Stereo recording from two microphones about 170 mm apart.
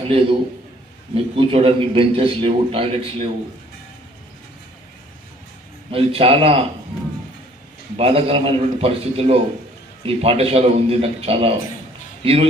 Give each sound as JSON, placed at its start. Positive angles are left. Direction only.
{"t": 0.1, "sound": "a man's voice", "side_deg": -35}
{"t": 5.9, "sound": "a man's voice", "side_deg": -35}
{"t": 7.9, "sound": "a man's voice", "side_deg": -35}